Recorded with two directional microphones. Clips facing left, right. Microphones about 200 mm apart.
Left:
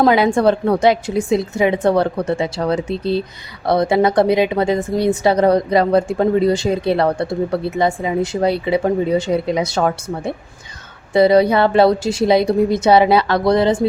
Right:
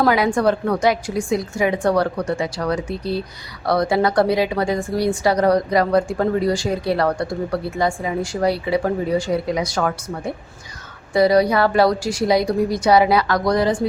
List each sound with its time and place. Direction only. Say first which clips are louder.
0.0 s speech: left 4 dB; 25° left (ahead or behind)